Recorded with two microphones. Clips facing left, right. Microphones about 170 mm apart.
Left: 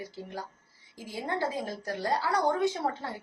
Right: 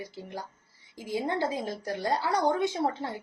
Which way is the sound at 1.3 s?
20° right (ahead or behind).